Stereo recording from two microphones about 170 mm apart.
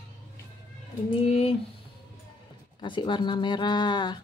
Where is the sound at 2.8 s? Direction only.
30° left (ahead or behind).